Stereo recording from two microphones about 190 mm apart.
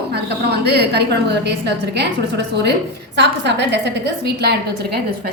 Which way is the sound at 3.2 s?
65° right (ahead or behind).